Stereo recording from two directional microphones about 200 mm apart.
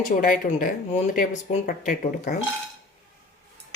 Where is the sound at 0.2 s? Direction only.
40° left (ahead or behind).